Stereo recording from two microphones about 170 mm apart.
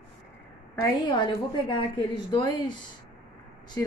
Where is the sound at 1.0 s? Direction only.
30° left (ahead or behind).